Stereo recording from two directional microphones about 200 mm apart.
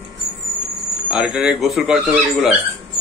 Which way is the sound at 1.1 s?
5° right (ahead or behind).